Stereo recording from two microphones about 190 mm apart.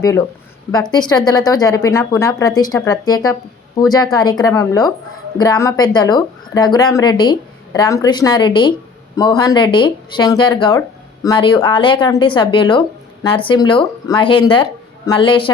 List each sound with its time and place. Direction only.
0.7 s speech: 20° left (ahead or behind)
3.9 s speech: 20° left (ahead or behind)